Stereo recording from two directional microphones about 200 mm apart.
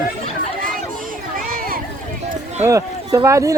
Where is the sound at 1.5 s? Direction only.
45° right (ahead or behind).